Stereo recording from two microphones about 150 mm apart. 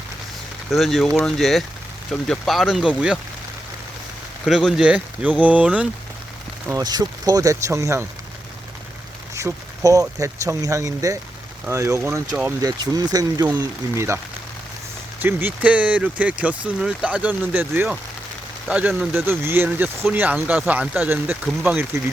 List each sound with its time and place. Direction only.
0.7 s speech: centre (ahead or behind)
4.4 s speech: centre (ahead or behind)
6.7 s speech: 25° right (ahead or behind)
9.3 s speech: 20° right (ahead or behind)
15.2 s speech: 15° right (ahead or behind)